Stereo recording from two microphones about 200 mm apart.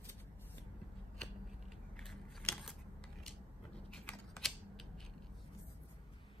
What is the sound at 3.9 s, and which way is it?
Typing, 5° left (ahead or behind).